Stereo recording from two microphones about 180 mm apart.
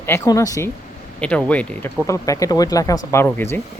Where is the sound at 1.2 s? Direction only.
5° left (ahead or behind).